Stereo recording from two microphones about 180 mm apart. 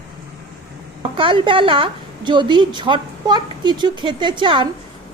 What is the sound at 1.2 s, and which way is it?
A woman's voice, 30° right (ahead or behind).